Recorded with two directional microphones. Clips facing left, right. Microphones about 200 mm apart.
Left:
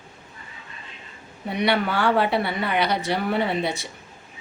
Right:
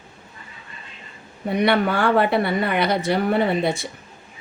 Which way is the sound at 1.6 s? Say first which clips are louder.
Right 3 dB; 50° right (ahead or behind).